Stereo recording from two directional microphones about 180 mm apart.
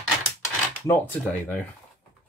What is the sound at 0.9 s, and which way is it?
Speech, 10° left (ahead or behind).